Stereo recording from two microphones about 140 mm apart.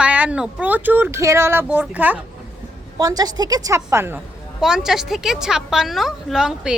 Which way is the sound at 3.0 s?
25° right (ahead or behind).